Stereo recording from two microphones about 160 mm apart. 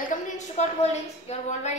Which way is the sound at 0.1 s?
45° left (ahead or behind).